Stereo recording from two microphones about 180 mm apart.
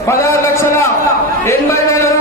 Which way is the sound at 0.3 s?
15° left (ahead or behind).